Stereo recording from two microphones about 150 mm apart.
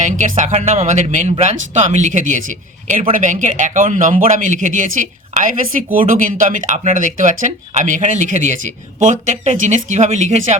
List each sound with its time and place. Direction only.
0.0 s speech: 55° right (ahead or behind)